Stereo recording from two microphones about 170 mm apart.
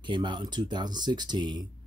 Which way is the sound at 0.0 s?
25° right (ahead or behind).